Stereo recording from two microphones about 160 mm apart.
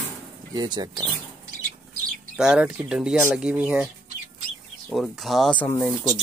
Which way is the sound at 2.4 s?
5° right (ahead or behind).